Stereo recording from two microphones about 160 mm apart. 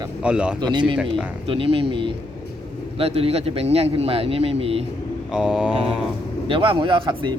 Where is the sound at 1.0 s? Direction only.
5° right (ahead or behind).